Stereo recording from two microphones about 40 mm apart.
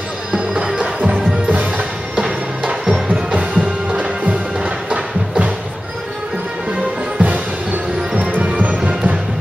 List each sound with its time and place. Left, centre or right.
0.7 s music: right
1.1 s music: right
2.7 s music: centre
3.2 s music: right
7.2 s music: right